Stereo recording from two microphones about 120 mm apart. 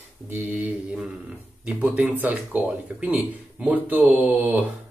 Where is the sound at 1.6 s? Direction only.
10° right (ahead or behind).